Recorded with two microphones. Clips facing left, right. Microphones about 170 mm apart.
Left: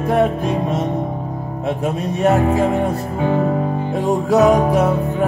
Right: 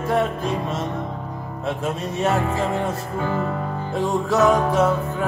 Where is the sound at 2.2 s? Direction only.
15° left (ahead or behind).